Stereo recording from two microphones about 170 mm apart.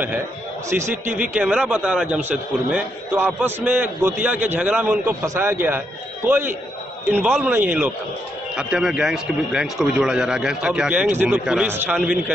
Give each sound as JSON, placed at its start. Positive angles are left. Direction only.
{"t": 0.7, "sound": "a man's voice", "side_deg": -15}